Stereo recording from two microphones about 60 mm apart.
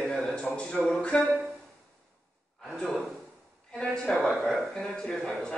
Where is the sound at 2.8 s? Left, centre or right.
Left.